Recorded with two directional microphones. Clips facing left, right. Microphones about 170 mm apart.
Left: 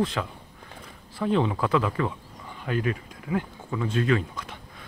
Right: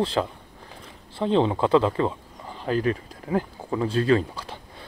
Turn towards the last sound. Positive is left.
turn(degrees=-30)  # may be behind; listen again after turning